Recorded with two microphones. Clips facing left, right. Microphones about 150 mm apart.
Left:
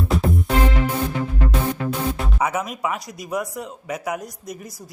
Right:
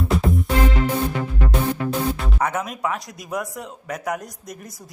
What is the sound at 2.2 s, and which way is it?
A man's voice, 5° left (ahead or behind).